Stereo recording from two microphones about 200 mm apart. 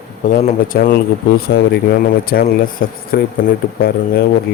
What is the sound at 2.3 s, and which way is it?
Speech, 45° left (ahead or behind).